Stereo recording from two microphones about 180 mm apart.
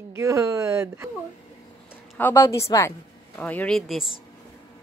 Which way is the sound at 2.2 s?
15° left (ahead or behind).